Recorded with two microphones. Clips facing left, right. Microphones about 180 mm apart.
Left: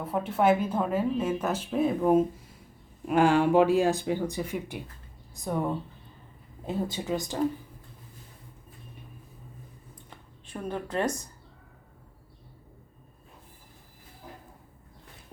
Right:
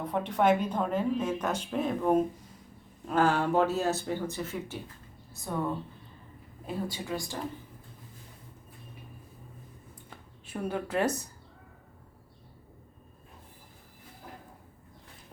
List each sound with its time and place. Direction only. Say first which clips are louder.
0.0 s a woman's voice: left 2 dB; 5° left (ahead or behind)
6.7 s a woman's voice: left 4 dB; 25° left (ahead or behind)
10.4 s a woman's voice: right 1 dB; 10° right (ahead or behind)